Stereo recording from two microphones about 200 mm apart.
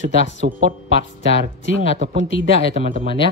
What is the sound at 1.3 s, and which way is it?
Speech, 65° left (ahead or behind).